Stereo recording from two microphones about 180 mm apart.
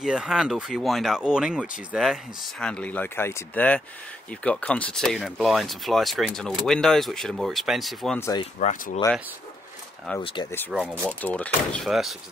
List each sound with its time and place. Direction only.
0.0 s speech: 5° right (ahead or behind)
8.2 s speech: 20° left (ahead or behind)
8.5 s speech: 40° left (ahead or behind)
10.2 s speech: 25° left (ahead or behind)
10.7 s speech: centre (ahead or behind)